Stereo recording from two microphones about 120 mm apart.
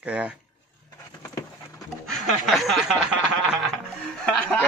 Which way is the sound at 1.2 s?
30° left (ahead or behind).